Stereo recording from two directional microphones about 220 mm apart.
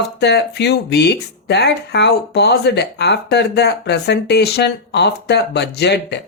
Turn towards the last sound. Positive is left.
turn(degrees=50)  # may be behind; listen again after turning